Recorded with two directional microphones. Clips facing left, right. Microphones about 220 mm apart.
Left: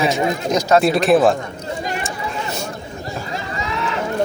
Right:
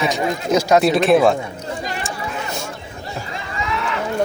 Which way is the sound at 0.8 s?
Centre (ahead or behind).